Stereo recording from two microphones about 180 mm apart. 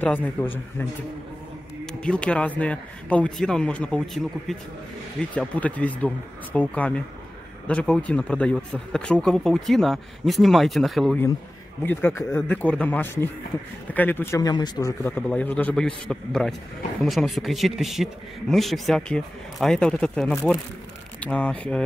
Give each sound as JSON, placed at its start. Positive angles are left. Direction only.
{"t": 0.0, "sound": "speech", "side_deg": 10}
{"t": 1.9, "sound": "speech", "side_deg": 5}
{"t": 11.8, "sound": "speech", "side_deg": 10}